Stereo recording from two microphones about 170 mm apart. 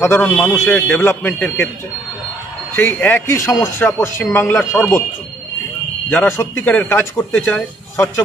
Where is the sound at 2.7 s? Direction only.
10° left (ahead or behind).